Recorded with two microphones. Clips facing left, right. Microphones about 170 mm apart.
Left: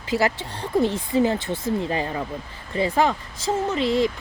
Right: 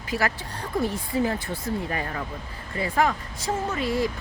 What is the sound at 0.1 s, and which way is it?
Speech, 25° left (ahead or behind).